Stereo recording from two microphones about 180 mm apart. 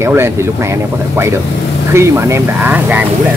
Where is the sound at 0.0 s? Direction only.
15° right (ahead or behind).